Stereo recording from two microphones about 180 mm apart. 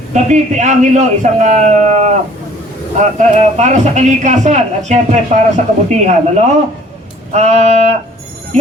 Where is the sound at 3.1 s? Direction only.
40° right (ahead or behind).